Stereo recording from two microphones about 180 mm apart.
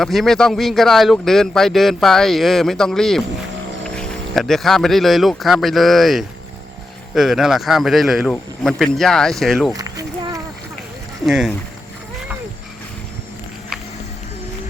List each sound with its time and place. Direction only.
0.0 s speech: centre (ahead or behind)
9.7 s a sound: 20° right (ahead or behind)
11.3 s speech: 5° right (ahead or behind)